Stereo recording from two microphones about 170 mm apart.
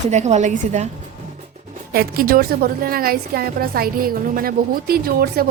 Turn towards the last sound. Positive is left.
turn(degrees=-65)  # may be behind; listen again after turning